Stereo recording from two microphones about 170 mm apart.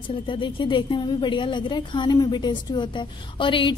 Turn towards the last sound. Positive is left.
turn(degrees=30)  # may be behind; listen again after turning